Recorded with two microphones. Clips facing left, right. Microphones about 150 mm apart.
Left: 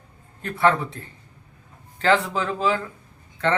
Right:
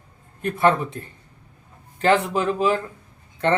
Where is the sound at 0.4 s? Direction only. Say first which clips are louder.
Right 1 dB; 20° right (ahead or behind).